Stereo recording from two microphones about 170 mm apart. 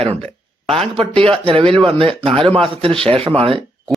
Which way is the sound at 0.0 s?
35° right (ahead or behind).